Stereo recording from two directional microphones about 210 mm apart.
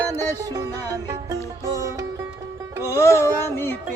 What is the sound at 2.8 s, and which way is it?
Music, 15° left (ahead or behind).